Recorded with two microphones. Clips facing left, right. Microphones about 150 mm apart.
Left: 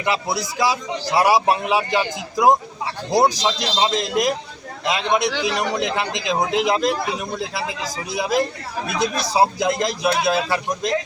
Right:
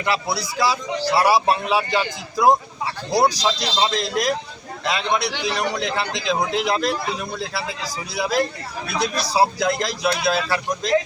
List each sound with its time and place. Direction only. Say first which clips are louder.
0.0 s a man's voice: left 1 dB; 20° left (ahead or behind)